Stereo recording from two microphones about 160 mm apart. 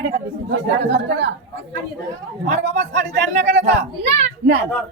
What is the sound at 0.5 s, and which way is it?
Speech, 90° right.